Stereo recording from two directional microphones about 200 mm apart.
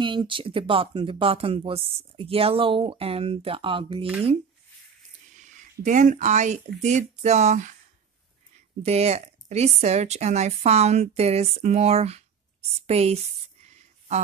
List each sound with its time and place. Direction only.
0.0 s speech: 25° right (ahead or behind)
5.4 s speech: 40° right (ahead or behind)
8.8 s speech: 30° right (ahead or behind)
12.8 s a sound: 30° right (ahead or behind)